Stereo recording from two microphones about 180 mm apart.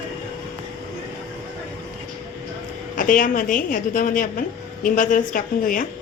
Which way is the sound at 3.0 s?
50° left (ahead or behind).